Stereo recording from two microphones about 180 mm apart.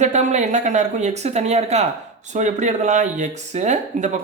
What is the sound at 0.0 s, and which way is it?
Speech, 40° right (ahead or behind).